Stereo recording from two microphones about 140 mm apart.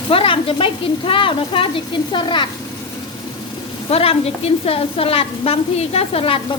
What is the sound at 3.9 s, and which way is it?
A woman's voice, 45° left (ahead or behind).